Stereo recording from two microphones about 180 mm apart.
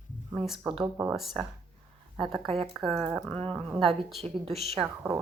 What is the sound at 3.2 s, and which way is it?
Dog, 5° left (ahead or behind).